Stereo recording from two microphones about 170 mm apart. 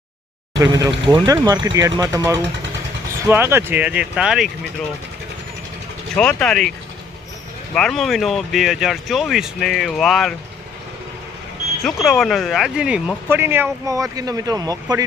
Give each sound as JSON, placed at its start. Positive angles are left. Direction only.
{"t": 0.6, "sound": "speech", "side_deg": -20}
{"t": 6.1, "sound": "speech", "side_deg": 5}
{"t": 11.8, "sound": "speech", "side_deg": 0}